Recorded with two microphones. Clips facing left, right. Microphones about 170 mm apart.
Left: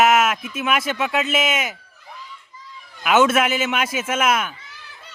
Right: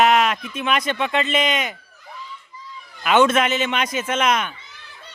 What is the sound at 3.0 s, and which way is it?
Speech, 5° left (ahead or behind).